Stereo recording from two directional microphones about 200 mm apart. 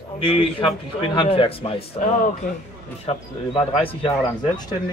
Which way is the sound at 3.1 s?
25° left (ahead or behind).